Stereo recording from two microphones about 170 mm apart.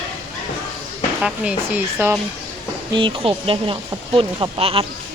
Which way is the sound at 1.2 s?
5° right (ahead or behind).